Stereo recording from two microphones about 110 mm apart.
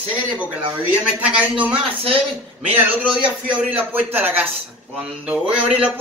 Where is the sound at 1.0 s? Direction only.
10° right (ahead or behind).